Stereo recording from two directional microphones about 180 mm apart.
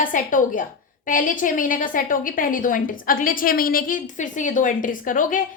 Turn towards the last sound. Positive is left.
turn(degrees=45)  # may be behind; listen again after turning